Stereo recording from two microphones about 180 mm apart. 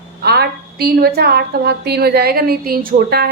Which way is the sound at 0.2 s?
65° right (ahead or behind).